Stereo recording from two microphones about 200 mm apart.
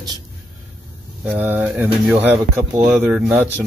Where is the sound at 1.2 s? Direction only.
10° right (ahead or behind).